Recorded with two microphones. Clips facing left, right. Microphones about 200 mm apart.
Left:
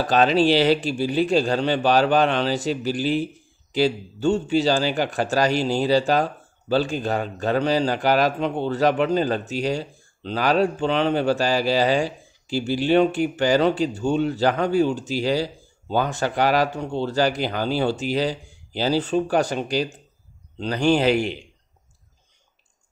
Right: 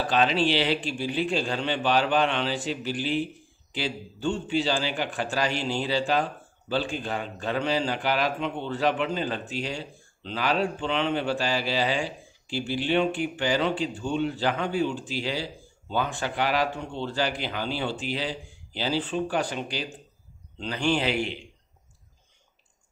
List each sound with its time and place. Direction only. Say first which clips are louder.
0.0 s a man's voice: left 6 dB; 40° left (ahead or behind)